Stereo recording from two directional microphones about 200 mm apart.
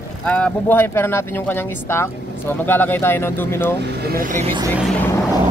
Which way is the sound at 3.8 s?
45° right (ahead or behind).